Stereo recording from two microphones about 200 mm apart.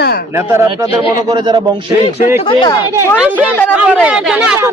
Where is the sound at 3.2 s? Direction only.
10° right (ahead or behind).